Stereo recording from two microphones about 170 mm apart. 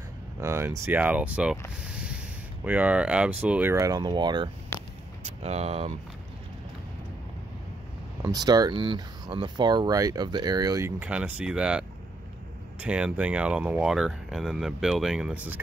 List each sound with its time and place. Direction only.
0.4 s speech: 15° right (ahead or behind)
1.8 s a sound: 5° right (ahead or behind)
2.6 s speech: 10° right (ahead or behind)
3.7 s speech: 20° right (ahead or behind)
5.2 s speech: 40° right (ahead or behind)
8.2 s speech: 20° right (ahead or behind)
11.0 s speech: 10° right (ahead or behind)
12.8 s speech: 5° right (ahead or behind)